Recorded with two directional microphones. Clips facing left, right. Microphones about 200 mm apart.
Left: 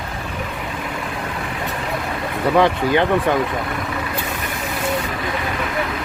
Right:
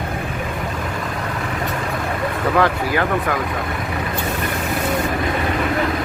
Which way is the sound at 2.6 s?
20° left (ahead or behind).